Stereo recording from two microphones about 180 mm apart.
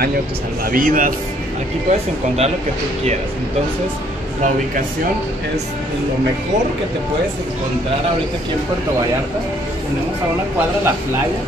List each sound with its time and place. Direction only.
0.7 s speech: 50° right (ahead or behind)
1.9 s speech: 35° right (ahead or behind)